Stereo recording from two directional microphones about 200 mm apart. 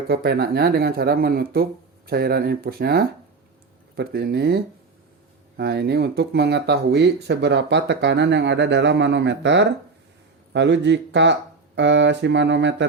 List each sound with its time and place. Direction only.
0.1 s speech: 50° right (ahead or behind)